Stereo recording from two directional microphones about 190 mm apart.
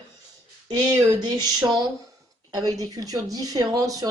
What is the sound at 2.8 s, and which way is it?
Speech, 20° right (ahead or behind).